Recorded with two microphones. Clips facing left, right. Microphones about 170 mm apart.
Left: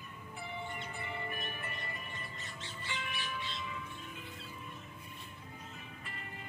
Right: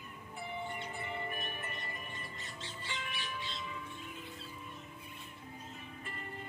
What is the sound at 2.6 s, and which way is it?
Music, 30° right (ahead or behind).